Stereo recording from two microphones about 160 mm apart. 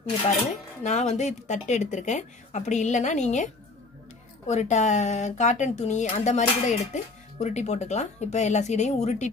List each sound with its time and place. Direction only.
0.2 s speech: 45° left (ahead or behind)
4.5 s speech: 45° left (ahead or behind)